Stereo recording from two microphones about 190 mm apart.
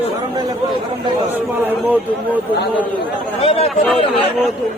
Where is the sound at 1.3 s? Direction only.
10° right (ahead or behind).